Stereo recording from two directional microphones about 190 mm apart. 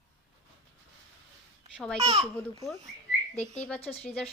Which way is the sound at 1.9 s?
30° right (ahead or behind).